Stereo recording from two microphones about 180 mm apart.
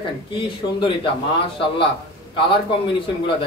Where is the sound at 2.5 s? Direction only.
30° left (ahead or behind).